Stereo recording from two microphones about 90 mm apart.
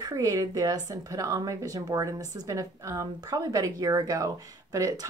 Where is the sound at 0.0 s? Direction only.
40° right (ahead or behind).